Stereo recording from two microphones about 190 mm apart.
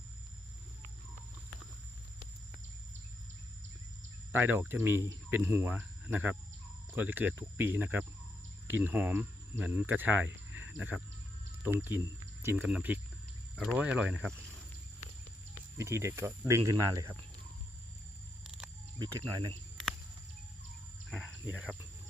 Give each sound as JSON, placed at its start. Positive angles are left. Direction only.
{"t": 4.3, "sound": "speech", "side_deg": -10}
{"t": 15.8, "sound": "speech", "side_deg": -15}
{"t": 18.9, "sound": "speech", "side_deg": -20}
{"t": 21.1, "sound": "speech", "side_deg": -5}